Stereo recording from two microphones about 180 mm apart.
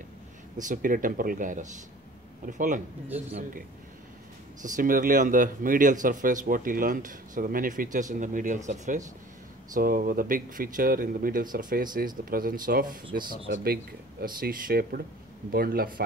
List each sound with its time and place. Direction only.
0.6 s speech: 45° right (ahead or behind)
4.6 s speech: 45° right (ahead or behind)
14.2 s speech: 55° right (ahead or behind)